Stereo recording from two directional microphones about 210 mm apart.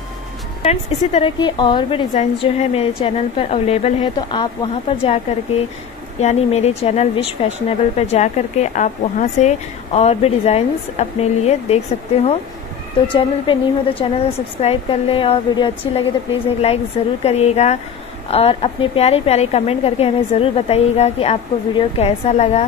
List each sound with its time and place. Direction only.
0.6 s a woman's voice: 30° left (ahead or behind)
6.2 s a woman's voice: 30° left (ahead or behind)